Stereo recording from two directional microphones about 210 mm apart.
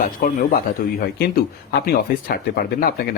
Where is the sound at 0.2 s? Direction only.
45° left (ahead or behind).